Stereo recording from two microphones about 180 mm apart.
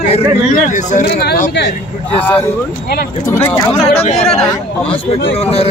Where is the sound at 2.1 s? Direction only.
10° left (ahead or behind).